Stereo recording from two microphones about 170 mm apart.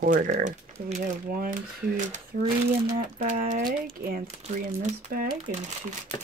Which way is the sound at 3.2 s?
45° right (ahead or behind).